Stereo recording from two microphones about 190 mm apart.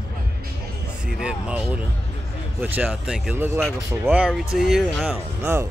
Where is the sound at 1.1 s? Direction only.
5° right (ahead or behind).